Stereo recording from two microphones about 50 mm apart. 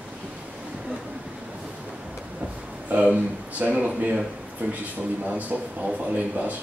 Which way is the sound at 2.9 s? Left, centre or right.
Right.